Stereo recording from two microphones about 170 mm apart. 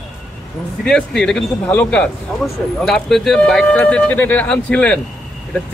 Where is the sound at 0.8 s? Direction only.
5° left (ahead or behind).